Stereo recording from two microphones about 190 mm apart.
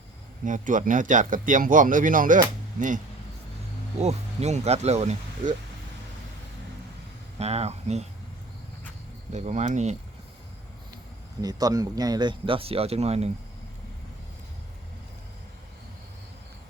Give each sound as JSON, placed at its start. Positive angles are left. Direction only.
{"t": 0.4, "sound": "speech", "side_deg": -45}
{"t": 4.0, "sound": "speech", "side_deg": -35}
{"t": 7.3, "sound": "speech", "side_deg": -35}
{"t": 9.3, "sound": "speech", "side_deg": -40}
{"t": 11.3, "sound": "speech", "side_deg": -20}